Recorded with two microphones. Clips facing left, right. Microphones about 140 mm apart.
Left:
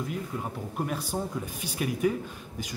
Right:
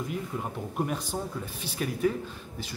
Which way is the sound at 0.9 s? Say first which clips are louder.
Left 1 dB; 10° left (ahead or behind).